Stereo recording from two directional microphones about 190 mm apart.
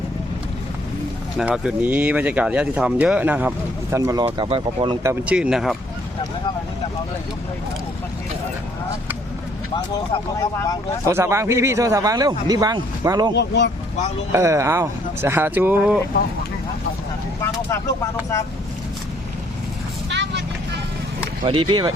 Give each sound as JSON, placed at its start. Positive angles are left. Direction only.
{"t": 1.4, "sound": "speech", "side_deg": -5}
{"t": 5.0, "sound": "speech", "side_deg": -5}
{"t": 11.0, "sound": "speech", "side_deg": -15}
{"t": 13.3, "sound": "speech", "side_deg": 65}
{"t": 14.3, "sound": "speech", "side_deg": -15}
{"t": 17.4, "sound": "speech", "side_deg": 15}
{"t": 20.1, "sound": "vehicle", "side_deg": -65}
{"t": 21.4, "sound": "speech", "side_deg": -25}